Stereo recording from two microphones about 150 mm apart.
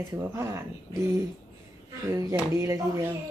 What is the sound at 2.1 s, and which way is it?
Speech, 20° right (ahead or behind).